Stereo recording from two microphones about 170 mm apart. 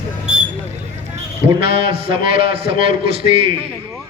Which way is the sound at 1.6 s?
35° right (ahead or behind).